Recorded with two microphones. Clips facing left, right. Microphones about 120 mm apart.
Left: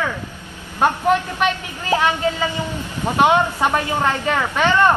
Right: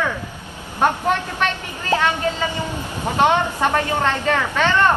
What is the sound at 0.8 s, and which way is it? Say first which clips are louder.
Speech: left 2 dB; 10° left (ahead or behind).